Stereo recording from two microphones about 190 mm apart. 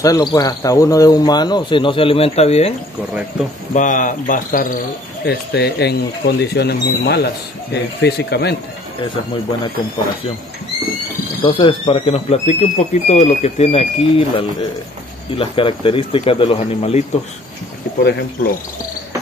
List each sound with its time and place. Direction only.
0.0 s speech: 20° left (ahead or behind)
3.7 s speech: 40° left (ahead or behind)
5.2 s speech: 60° left (ahead or behind)
11.4 s speech: 25° left (ahead or behind)